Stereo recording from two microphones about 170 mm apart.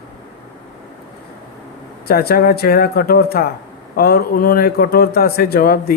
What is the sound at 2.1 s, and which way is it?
A man's voice, 65° left (ahead or behind).